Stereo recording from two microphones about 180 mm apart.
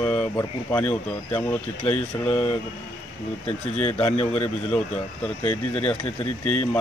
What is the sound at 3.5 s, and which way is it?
Speech, 35° left (ahead or behind).